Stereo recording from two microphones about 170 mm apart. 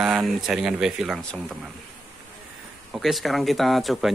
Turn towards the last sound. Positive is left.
turn(degrees=0)  # may be behind; listen again after turning